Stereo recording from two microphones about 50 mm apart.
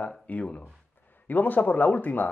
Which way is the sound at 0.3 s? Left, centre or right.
Left.